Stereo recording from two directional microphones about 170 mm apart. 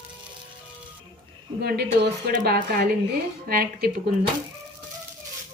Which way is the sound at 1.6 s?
70° right (ahead or behind).